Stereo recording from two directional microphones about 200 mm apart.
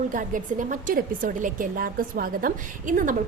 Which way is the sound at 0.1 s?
40° right (ahead or behind).